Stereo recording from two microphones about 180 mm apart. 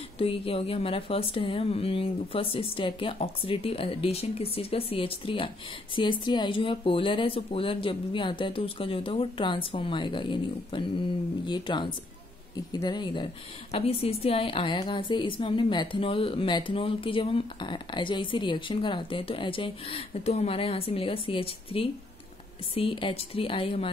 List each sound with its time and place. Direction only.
0.2 s speech: 35° left (ahead or behind)